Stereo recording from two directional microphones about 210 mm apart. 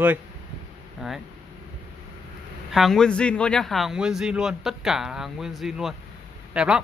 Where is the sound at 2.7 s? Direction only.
Centre (ahead or behind).